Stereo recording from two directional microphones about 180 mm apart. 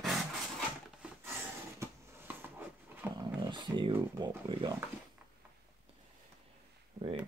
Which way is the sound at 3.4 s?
25° right (ahead or behind).